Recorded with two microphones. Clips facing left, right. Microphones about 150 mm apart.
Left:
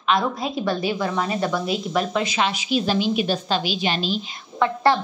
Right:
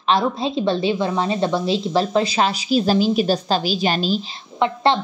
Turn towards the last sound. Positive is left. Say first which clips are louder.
# right 1 dB
turn(degrees=-25)  # may be behind; listen again after turning